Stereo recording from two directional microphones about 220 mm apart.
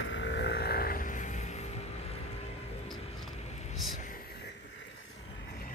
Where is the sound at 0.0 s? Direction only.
55° left (ahead or behind); by 1.7 s 30° left (ahead or behind).